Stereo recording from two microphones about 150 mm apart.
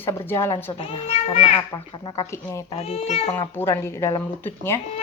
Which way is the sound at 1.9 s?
30° left (ahead or behind).